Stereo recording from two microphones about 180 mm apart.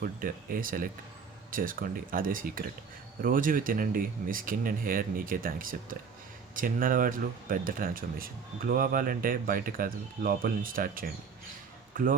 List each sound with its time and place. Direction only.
0.0 s speech: 50° right (ahead or behind)